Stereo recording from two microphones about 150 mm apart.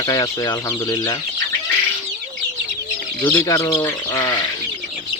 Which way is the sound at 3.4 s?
20° left (ahead or behind).